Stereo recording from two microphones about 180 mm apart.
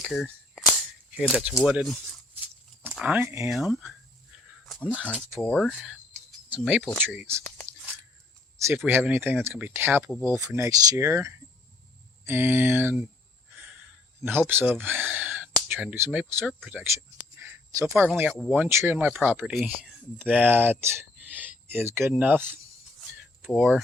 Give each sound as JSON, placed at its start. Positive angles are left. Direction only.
{"t": 0.0, "sound": "cap gun", "side_deg": 0}
{"t": 1.1, "sound": "speech", "side_deg": -5}
{"t": 3.5, "sound": "speech", "side_deg": 0}
{"t": 8.9, "sound": "speech", "side_deg": -10}
{"t": 14.2, "sound": "speech", "side_deg": -10}
{"t": 17.3, "sound": "a sound", "side_deg": -15}
{"t": 18.1, "sound": "speech", "side_deg": -5}